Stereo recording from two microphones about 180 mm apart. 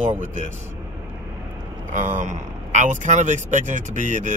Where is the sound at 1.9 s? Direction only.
45° right (ahead or behind).